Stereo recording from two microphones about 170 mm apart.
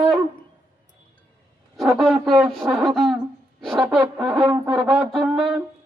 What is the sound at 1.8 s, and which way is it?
Speech, centre (ahead or behind).